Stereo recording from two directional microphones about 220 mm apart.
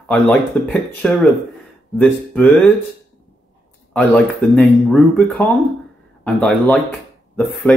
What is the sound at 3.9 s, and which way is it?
Speech, 5° left (ahead or behind).